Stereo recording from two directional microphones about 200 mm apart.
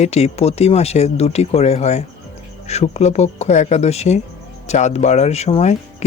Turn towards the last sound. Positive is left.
turn(degrees=30)  # may be behind; listen again after turning